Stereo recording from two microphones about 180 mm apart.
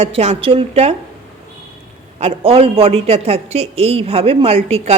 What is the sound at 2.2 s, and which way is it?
Speech, 35° right (ahead or behind).